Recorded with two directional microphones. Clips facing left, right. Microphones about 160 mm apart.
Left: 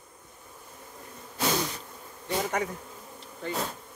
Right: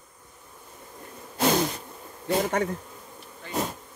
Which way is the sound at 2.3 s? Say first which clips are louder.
Right 4 dB; 50° right (ahead or behind).